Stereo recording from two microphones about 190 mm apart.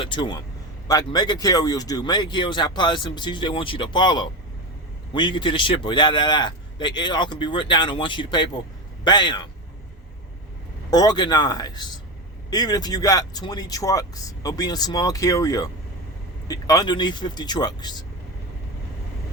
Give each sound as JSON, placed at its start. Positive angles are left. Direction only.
{"t": 0.0, "sound": "speech", "side_deg": 25}
{"t": 10.9, "sound": "speech", "side_deg": 20}